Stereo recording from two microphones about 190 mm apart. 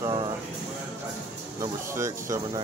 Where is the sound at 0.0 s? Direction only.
25° right (ahead or behind).